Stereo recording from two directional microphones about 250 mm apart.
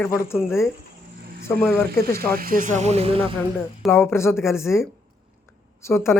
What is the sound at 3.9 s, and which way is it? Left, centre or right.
Speech, centre.